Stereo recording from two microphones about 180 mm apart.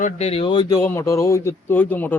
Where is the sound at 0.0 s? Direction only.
35° left (ahead or behind).